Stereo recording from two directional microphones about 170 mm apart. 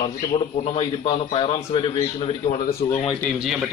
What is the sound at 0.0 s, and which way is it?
A man's voice, 35° left (ahead or behind).